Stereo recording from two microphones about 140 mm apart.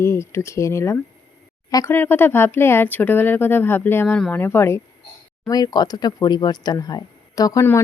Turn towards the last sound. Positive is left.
turn(degrees=25)  # may be behind; listen again after turning